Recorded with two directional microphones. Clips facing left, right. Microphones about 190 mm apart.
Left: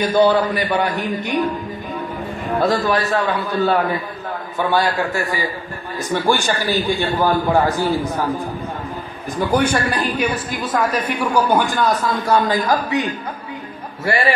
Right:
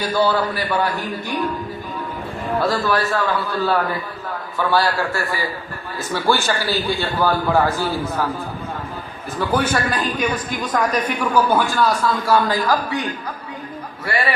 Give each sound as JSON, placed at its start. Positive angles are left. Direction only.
{"t": 0.0, "sound": "a man's voice", "side_deg": 20}
{"t": 2.6, "sound": "a man's voice", "side_deg": 20}
{"t": 9.4, "sound": "a man's voice", "side_deg": 15}
{"t": 14.0, "sound": "a man's voice", "side_deg": 25}